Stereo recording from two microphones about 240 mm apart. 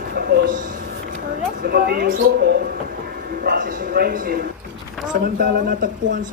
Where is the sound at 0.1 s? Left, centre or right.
Right.